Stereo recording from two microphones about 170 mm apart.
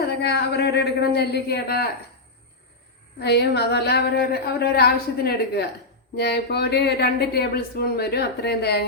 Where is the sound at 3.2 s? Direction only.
75° left (ahead or behind).